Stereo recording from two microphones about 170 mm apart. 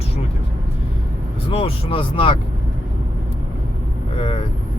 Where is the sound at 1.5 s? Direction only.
35° left (ahead or behind).